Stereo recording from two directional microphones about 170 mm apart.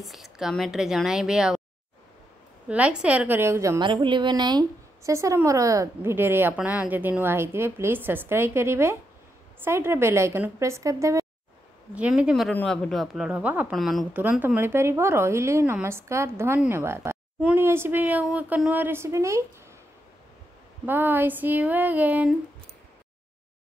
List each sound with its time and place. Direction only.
0.0 s a woman's voice: centre (ahead or behind)
2.7 s a woman's voice: 5° right (ahead or behind)
3.8 s a woman's voice: 30° right (ahead or behind)
11.9 s a woman's voice: 5° right (ahead or behind)
14.1 s a woman's voice: 10° right (ahead or behind)
20.8 s a woman's voice: 10° right (ahead or behind)